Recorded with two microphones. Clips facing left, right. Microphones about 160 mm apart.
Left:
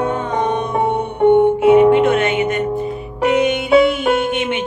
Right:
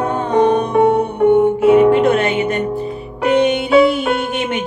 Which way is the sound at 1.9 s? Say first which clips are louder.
Even; 35° right (ahead or behind).